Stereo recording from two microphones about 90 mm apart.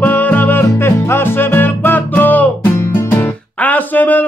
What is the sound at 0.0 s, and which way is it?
Music, 20° left (ahead or behind).